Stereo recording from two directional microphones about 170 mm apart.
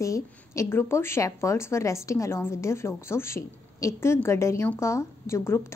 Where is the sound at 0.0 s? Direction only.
15° left (ahead or behind).